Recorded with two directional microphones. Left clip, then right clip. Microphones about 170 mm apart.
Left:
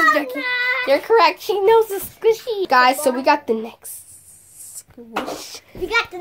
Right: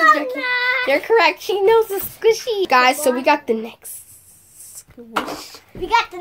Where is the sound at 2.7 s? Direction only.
10° left (ahead or behind).